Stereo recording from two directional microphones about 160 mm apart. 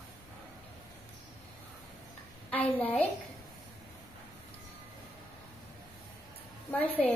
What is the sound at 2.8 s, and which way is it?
Speech, 10° left (ahead or behind).